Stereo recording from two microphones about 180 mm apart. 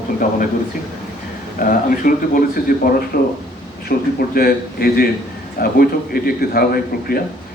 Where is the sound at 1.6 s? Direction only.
50° left (ahead or behind).